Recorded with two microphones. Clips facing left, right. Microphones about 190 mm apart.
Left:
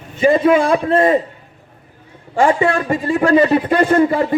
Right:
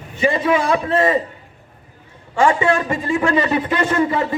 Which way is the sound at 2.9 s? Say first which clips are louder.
Left 3 dB; 35° left (ahead or behind).